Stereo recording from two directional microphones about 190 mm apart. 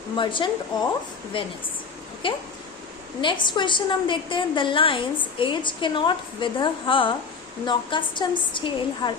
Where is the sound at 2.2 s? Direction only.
25° left (ahead or behind).